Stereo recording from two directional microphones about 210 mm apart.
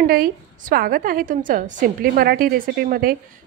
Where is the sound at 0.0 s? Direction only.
45° right (ahead or behind).